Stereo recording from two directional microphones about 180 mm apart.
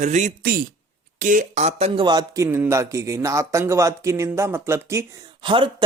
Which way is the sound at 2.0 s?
20° right (ahead or behind).